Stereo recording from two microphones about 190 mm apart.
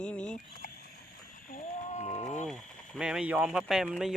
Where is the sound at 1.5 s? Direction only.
45° left (ahead or behind).